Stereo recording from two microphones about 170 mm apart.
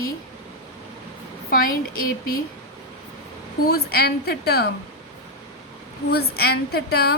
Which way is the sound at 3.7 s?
70° left (ahead or behind).